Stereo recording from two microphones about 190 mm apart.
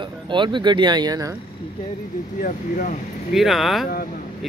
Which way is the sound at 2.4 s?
45° left (ahead or behind).